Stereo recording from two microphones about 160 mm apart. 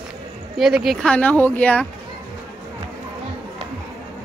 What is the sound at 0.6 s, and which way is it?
Speech, 5° right (ahead or behind).